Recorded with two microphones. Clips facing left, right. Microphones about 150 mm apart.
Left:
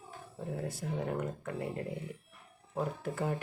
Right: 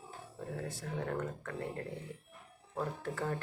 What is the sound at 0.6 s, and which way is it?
Speech, 10° left (ahead or behind).